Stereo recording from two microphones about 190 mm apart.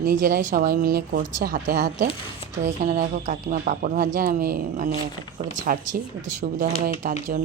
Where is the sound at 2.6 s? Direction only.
40° right (ahead or behind).